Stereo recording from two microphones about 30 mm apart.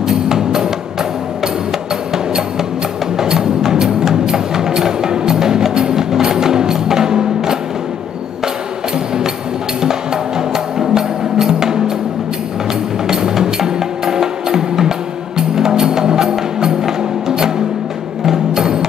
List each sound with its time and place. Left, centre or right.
0.0 s music: centre
3.2 s music: centre
9.8 s music: centre
13.0 s music: centre
18.2 s music: centre